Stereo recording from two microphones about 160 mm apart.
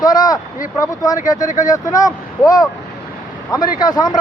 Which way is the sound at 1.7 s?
20° left (ahead or behind).